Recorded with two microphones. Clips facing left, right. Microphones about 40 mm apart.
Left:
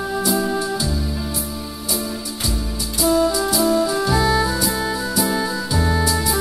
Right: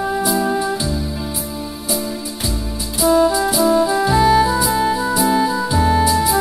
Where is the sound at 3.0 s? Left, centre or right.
Centre.